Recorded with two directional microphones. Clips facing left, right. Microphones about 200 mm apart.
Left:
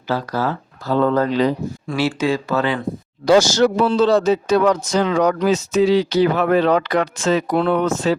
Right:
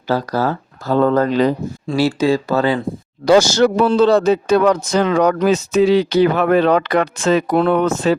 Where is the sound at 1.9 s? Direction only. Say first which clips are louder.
Right 4 dB; 35° right (ahead or behind).